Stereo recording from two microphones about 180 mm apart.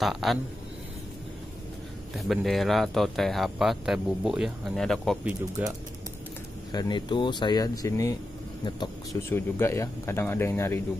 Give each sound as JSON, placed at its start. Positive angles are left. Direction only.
{"t": 0.0, "sound": "speech", "side_deg": 0}
{"t": 2.1, "sound": "speech", "side_deg": 0}
{"t": 6.7, "sound": "speech", "side_deg": 25}
{"t": 9.3, "sound": "speech", "side_deg": 15}